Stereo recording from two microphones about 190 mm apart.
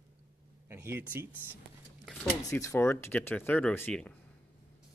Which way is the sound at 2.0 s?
10° left (ahead or behind).